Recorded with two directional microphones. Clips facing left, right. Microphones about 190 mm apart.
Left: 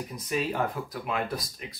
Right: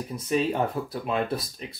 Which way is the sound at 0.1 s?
25° right (ahead or behind).